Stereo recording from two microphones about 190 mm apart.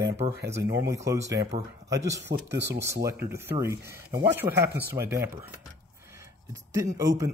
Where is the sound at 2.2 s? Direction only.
65° right (ahead or behind).